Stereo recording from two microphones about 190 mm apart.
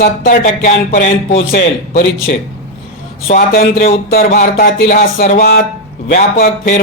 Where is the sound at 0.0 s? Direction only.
45° left (ahead or behind).